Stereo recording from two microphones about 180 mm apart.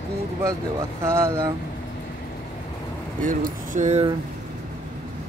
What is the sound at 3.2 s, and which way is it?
Speech, 45° right (ahead or behind).